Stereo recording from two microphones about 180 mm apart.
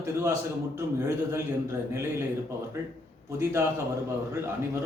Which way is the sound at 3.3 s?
15° right (ahead or behind).